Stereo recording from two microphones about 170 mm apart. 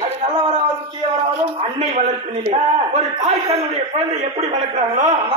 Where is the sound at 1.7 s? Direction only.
40° right (ahead or behind).